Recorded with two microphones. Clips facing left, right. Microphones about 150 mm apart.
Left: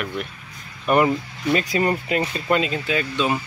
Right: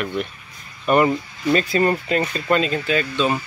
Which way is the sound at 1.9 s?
10° left (ahead or behind).